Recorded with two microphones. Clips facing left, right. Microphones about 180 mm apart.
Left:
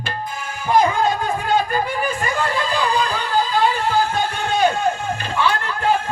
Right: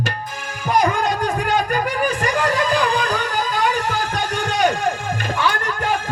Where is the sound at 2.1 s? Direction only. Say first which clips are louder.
Right 2 dB; 90° right.